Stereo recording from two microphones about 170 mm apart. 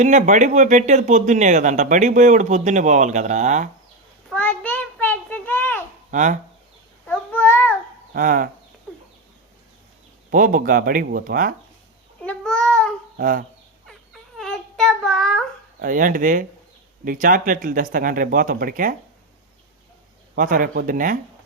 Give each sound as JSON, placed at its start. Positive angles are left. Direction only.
{"t": 0.0, "sound": "speech", "side_deg": -45}
{"t": 4.3, "sound": "child singing", "side_deg": 10}
{"t": 6.1, "sound": "speech", "side_deg": -45}
{"t": 7.1, "sound": "babbling", "side_deg": 10}
{"t": 8.1, "sound": "speech", "side_deg": -55}
{"t": 10.3, "sound": "speech", "side_deg": -50}
{"t": 12.2, "sound": "babbling", "side_deg": 5}
{"t": 13.1, "sound": "speech", "side_deg": -55}
{"t": 13.8, "sound": "a sound", "side_deg": 0}
{"t": 15.8, "sound": "speech", "side_deg": -50}
{"t": 20.3, "sound": "speech", "side_deg": -50}